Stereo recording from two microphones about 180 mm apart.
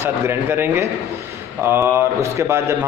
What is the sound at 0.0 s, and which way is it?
A man's voice, 10° right (ahead or behind).